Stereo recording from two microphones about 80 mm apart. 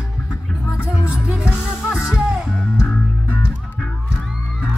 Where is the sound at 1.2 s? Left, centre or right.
Centre.